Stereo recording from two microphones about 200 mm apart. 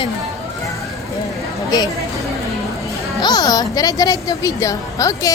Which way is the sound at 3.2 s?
20° left (ahead or behind).